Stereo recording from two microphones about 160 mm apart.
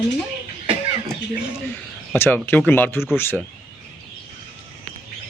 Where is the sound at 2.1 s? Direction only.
15° left (ahead or behind).